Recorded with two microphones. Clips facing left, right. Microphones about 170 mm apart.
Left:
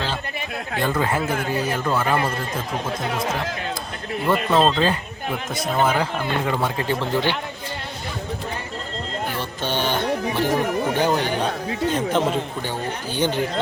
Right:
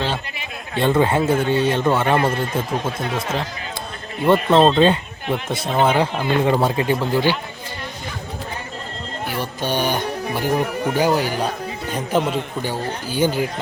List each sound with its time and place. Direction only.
0.8 s a man's voice: 25° right (ahead or behind)
4.3 s a man's voice: 25° right (ahead or behind)
6.7 s speech: 10° right (ahead or behind)
9.4 s music: 10° right (ahead or behind)
10.9 s a man's voice: 10° right (ahead or behind)